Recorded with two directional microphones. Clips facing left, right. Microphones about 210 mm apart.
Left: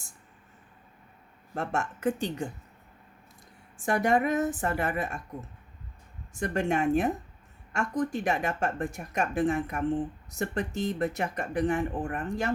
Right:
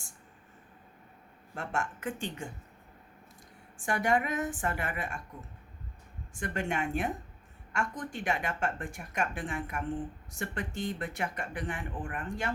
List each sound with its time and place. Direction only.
1.5 s speech: 40° left (ahead or behind)
3.8 s speech: 40° left (ahead or behind)
6.4 s speech: 40° left (ahead or behind)